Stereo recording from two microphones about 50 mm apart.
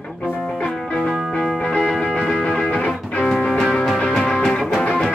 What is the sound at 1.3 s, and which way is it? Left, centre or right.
Music, centre.